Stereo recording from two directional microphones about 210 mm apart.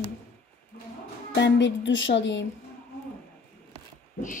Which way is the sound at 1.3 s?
55° left (ahead or behind).